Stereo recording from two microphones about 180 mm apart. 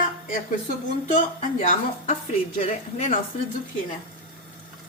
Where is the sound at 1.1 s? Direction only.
40° left (ahead or behind).